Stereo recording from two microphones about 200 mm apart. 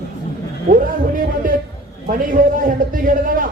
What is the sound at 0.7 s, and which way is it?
Speech, 40° right (ahead or behind).